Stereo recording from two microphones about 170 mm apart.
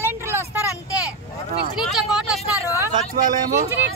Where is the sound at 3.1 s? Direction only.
55° right (ahead or behind).